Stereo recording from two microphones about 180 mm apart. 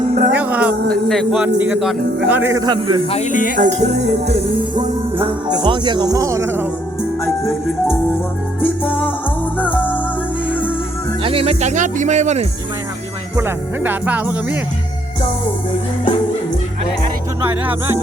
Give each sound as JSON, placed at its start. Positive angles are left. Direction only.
{"t": 0.1, "sound": "music", "side_deg": -60}
{"t": 0.3, "sound": "music", "side_deg": -10}
{"t": 0.9, "sound": "a man's voice", "side_deg": 0}
{"t": 3.1, "sound": "speech", "side_deg": 40}
{"t": 3.6, "sound": "speech", "side_deg": -40}
{"t": 4.7, "sound": "speech", "side_deg": -30}
{"t": 8.6, "sound": "music", "side_deg": 10}
{"t": 11.2, "sound": "speech", "side_deg": -30}
{"t": 13.3, "sound": "speech", "side_deg": -10}
{"t": 17.4, "sound": "speech", "side_deg": -10}